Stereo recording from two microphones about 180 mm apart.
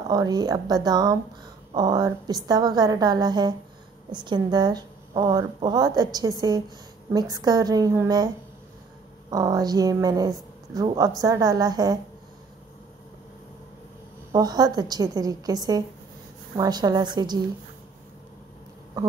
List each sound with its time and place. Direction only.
0.1 s a woman's voice: 20° right (ahead or behind)
9.3 s a woman's voice: 20° right (ahead or behind)
14.3 s a woman's voice: 20° right (ahead or behind)